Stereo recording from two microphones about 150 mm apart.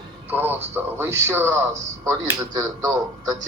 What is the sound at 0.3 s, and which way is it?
Speech, 15° right (ahead or behind).